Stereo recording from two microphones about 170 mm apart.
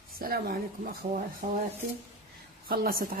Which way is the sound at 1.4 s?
50° right (ahead or behind).